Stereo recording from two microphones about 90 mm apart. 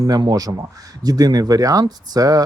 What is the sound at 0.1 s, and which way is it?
Speech, 45° right (ahead or behind).